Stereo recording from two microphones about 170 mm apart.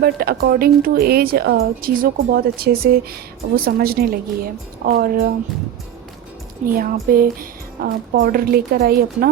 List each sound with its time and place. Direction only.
0.0 s a woman's voice: 65° right (ahead or behind)
6.7 s a woman's voice: 60° right (ahead or behind)